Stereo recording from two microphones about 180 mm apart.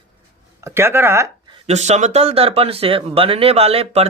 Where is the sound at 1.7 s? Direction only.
40° right (ahead or behind).